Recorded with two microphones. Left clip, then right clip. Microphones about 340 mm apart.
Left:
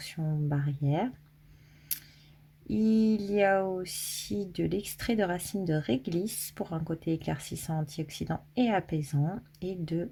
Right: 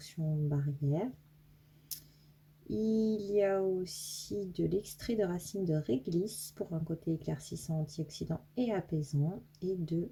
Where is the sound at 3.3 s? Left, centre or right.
Left.